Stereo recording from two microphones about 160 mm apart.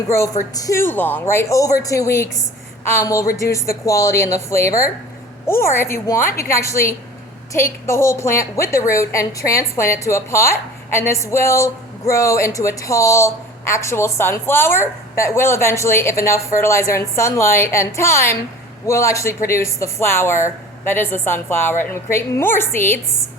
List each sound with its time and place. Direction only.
0.5 s a woman's voice: 20° left (ahead or behind)